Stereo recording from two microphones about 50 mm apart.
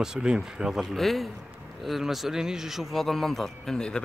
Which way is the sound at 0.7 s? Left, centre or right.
Centre.